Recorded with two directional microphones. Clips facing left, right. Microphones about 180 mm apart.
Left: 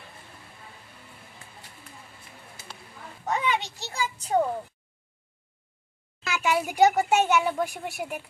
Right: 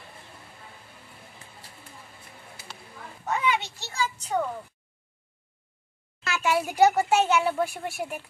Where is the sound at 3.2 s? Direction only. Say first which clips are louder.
Even; 15° left (ahead or behind).